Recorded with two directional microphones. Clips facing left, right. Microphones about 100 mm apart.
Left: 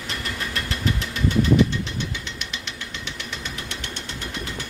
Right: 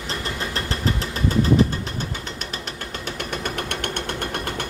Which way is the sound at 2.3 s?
45° right (ahead or behind).